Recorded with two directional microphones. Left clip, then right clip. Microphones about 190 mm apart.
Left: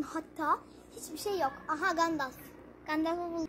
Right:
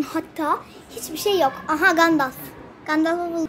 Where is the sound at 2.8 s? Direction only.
5° left (ahead or behind).